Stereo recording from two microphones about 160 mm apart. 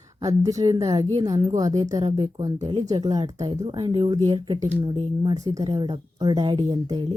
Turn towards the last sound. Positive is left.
turn(degrees=-30)  # may be behind; listen again after turning